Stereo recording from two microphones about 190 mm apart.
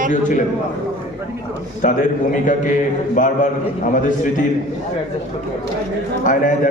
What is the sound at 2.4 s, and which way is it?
A man's voice, 45° left (ahead or behind).